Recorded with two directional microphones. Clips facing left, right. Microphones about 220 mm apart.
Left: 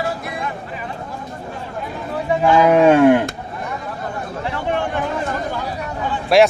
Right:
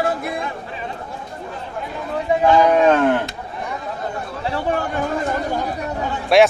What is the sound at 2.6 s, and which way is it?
Cattle, 10° left (ahead or behind).